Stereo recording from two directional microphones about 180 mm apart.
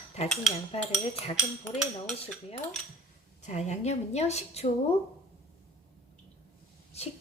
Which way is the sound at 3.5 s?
40° left (ahead or behind).